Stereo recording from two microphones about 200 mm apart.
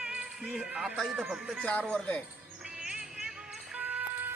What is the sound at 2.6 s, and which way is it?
Music, 5° right (ahead or behind).